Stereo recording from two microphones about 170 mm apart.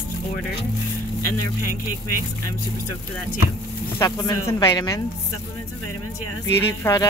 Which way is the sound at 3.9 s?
25° left (ahead or behind).